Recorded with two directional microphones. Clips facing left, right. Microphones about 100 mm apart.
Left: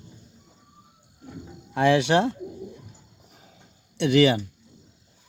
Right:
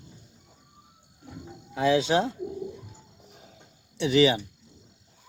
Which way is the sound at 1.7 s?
65° left (ahead or behind).